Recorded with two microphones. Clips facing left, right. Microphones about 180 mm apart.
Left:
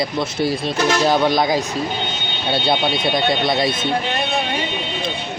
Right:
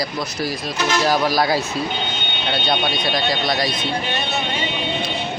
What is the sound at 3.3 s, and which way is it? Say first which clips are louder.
Speech: left 3 dB; 25° left (ahead or behind).